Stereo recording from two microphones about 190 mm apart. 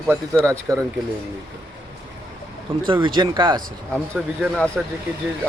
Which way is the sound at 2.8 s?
25° right (ahead or behind).